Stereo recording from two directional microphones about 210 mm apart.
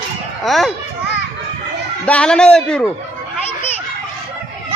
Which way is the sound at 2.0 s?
5° left (ahead or behind).